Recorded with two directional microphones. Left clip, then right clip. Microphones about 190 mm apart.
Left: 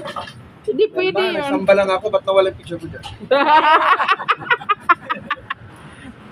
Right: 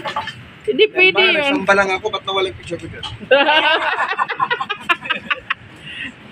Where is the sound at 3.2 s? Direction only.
15° left (ahead or behind).